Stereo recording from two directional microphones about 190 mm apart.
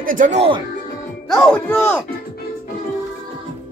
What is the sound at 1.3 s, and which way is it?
Speech, 5° left (ahead or behind).